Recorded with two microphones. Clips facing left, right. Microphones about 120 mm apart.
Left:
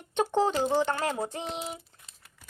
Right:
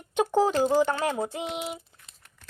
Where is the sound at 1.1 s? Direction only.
Centre (ahead or behind).